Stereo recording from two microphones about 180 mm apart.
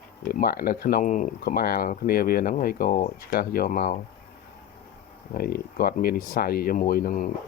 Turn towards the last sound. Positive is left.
turn(degrees=50)  # may be behind; listen again after turning